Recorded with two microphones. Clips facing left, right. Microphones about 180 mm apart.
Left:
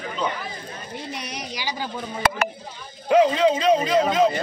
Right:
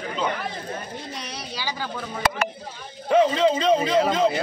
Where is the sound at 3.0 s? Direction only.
5° left (ahead or behind).